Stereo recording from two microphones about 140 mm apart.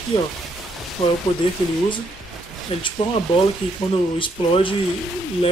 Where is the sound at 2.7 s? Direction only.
40° left (ahead or behind).